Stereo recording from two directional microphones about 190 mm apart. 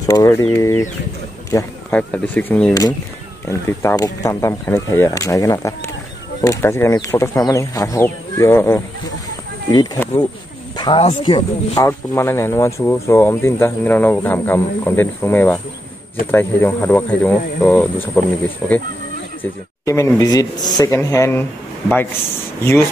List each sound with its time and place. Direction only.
0.0 s speech: 15° left (ahead or behind); by 18.8 s centre (ahead or behind)
19.8 s speech: 15° left (ahead or behind)